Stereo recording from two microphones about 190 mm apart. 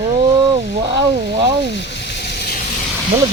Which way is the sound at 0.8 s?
30° right (ahead or behind).